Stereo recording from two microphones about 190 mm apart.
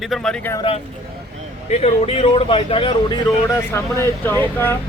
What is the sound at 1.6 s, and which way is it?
Speech, 35° left (ahead or behind).